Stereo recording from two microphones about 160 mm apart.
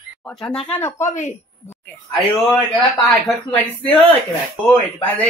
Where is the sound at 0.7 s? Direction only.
15° left (ahead or behind).